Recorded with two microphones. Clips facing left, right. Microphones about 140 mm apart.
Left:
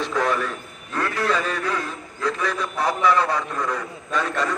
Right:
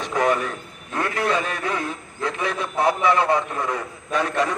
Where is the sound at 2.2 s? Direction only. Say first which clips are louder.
Left 1 dB; 20° right (ahead or behind).